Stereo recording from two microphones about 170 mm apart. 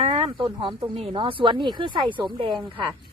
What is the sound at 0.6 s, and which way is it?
Speech, 25° right (ahead or behind).